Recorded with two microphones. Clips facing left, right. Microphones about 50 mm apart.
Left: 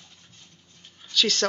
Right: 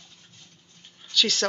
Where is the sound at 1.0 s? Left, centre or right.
Centre.